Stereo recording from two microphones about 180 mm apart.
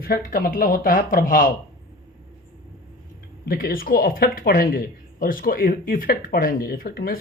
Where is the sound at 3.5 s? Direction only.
55° left (ahead or behind).